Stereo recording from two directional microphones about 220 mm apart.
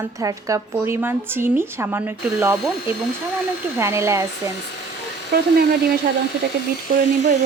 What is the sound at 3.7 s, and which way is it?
Speech, 10° right (ahead or behind).